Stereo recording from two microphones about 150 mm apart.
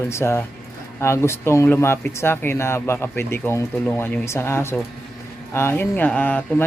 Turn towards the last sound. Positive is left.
turn(degrees=10)  # may be behind; listen again after turning